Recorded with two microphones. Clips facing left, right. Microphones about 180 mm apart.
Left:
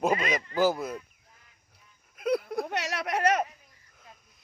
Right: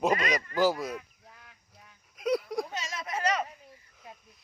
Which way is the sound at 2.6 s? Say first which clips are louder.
Left 6 dB; 70° left (ahead or behind).